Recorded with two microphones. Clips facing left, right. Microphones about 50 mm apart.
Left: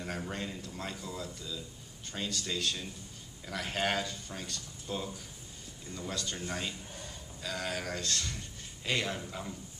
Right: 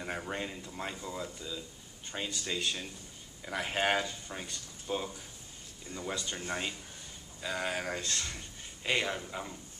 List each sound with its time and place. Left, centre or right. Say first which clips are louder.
0.0 s speech: right 1 dB; centre